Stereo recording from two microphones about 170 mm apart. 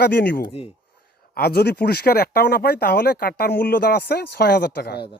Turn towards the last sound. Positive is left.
turn(degrees=70)  # may be behind; listen again after turning